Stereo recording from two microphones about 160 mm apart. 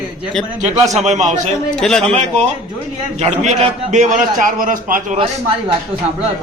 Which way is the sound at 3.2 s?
45° right (ahead or behind).